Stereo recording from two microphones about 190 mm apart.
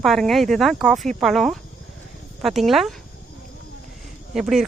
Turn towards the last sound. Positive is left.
turn(degrees=0)  # may be behind; listen again after turning